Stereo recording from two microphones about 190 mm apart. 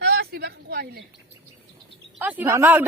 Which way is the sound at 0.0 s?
60° right (ahead or behind).